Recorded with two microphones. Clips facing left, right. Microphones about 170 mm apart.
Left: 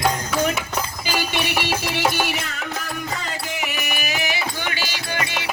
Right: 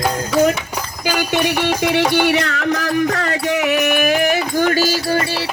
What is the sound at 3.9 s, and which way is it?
Music, 55° right (ahead or behind).